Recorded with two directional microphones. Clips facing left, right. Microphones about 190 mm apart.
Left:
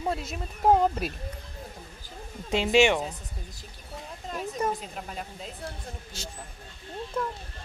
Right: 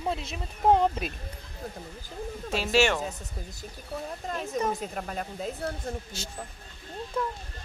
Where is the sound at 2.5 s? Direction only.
20° left (ahead or behind).